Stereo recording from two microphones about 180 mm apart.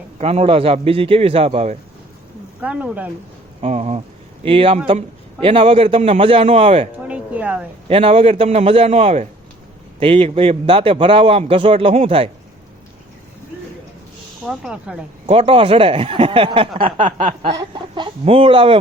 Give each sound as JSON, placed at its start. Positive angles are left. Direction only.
{"t": 0.2, "sound": "a man's voice", "side_deg": -35}
{"t": 2.6, "sound": "speech", "side_deg": -5}
{"t": 3.6, "sound": "a man's voice", "side_deg": -35}
{"t": 7.1, "sound": "a sound", "side_deg": -5}
{"t": 7.9, "sound": "a man's voice", "side_deg": -30}
{"t": 14.4, "sound": "speech", "side_deg": 0}
{"t": 15.3, "sound": "a man's voice", "side_deg": -30}
{"t": 17.1, "sound": "chuckle", "side_deg": -45}
{"t": 17.4, "sound": "speech", "side_deg": -25}